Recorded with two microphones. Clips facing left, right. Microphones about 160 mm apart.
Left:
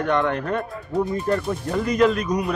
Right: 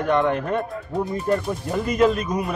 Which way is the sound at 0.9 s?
Centre (ahead or behind).